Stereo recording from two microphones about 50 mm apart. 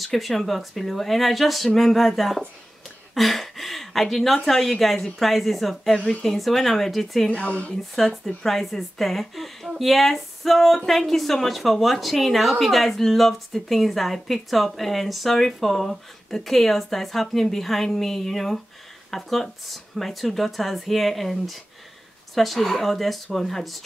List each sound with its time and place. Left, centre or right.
0.0 s a woman's voice: centre
5.9 s speech: left
6.2 s a woman's voice: centre
7.2 s speech: left
7.7 s a woman's voice: centre